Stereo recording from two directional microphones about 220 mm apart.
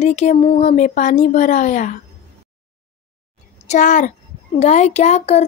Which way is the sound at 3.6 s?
35° left (ahead or behind).